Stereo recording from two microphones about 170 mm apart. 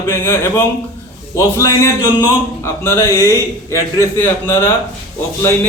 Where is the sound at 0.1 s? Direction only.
15° left (ahead or behind).